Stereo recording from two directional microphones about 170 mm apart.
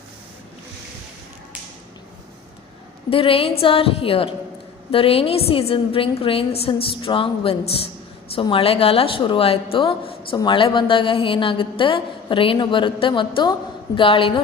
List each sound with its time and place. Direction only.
3.1 s a woman's voice: 35° left (ahead or behind)